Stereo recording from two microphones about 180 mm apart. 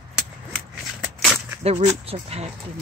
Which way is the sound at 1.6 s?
35° right (ahead or behind).